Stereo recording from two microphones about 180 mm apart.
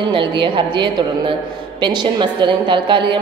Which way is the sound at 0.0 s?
25° right (ahead or behind).